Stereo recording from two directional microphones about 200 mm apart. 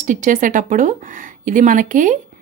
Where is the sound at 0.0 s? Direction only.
40° right (ahead or behind).